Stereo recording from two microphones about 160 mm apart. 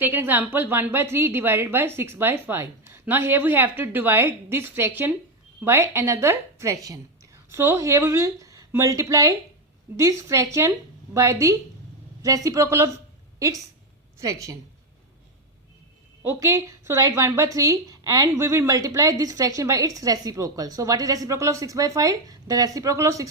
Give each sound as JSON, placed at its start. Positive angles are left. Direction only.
{"t": 0.0, "sound": "a woman's voice", "side_deg": -15}
{"t": 14.2, "sound": "speech", "side_deg": -20}
{"t": 16.2, "sound": "speech", "side_deg": -15}